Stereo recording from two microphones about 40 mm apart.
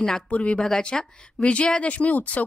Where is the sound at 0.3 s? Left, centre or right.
Left.